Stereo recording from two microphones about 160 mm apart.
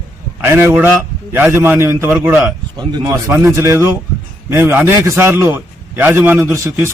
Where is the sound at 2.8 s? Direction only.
25° right (ahead or behind).